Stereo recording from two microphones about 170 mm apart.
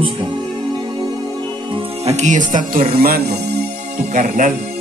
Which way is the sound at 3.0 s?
60° right (ahead or behind).